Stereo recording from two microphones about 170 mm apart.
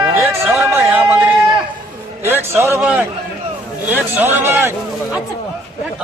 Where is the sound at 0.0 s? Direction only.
15° right (ahead or behind).